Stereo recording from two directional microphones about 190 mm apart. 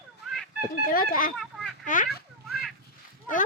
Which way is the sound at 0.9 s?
50° left (ahead or behind).